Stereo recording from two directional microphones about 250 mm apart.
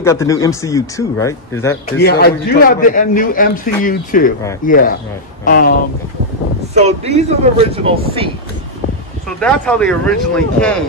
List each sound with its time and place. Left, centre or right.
0.0 s speech: centre
2.0 s a man's voice: left
6.7 s speech: right
9.4 s speech: centre